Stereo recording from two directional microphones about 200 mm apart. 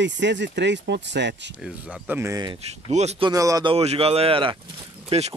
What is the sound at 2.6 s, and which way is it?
Speech, 35° right (ahead or behind).